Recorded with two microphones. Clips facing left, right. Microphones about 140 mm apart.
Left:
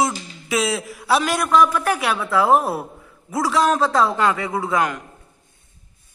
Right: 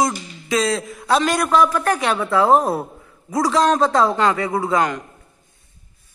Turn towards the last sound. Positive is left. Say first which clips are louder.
# right 2 dB
turn(degrees=0)  # may be behind; listen again after turning